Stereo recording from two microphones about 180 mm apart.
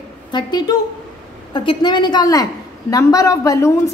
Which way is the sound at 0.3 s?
25° left (ahead or behind).